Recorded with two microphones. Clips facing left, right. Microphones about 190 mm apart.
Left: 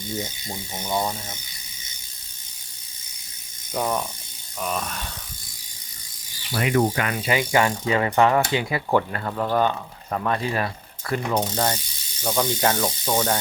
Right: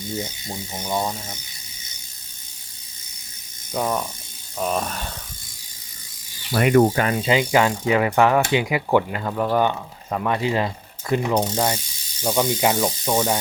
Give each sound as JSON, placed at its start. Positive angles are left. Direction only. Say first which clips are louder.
{"t": 0.2, "sound": "speech", "louder": "right 1 dB", "side_deg": -5}
{"t": 3.7, "sound": "speech", "louder": "right 1 dB", "side_deg": -5}
{"t": 4.5, "sound": "speech", "louder": "right 4 dB", "side_deg": -35}
{"t": 6.5, "sound": "speech", "louder": "right 6 dB", "side_deg": -55}
{"t": 6.9, "sound": "speech", "louder": "right 4 dB", "side_deg": -30}